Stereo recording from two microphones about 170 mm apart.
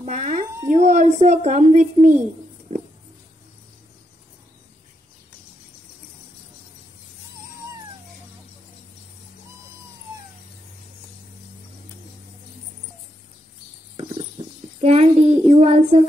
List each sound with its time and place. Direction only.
0.0 s a sound: 45° right (ahead or behind)
0.7 s speech: 45° right (ahead or behind)
14.8 s child singing: 35° right (ahead or behind)